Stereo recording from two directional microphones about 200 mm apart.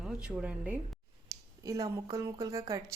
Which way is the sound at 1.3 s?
15° right (ahead or behind).